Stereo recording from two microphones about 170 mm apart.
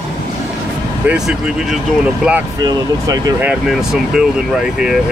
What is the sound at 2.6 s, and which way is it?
Speech, 20° right (ahead or behind).